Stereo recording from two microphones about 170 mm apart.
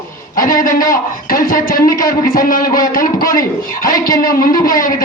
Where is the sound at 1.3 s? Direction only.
55° left (ahead or behind).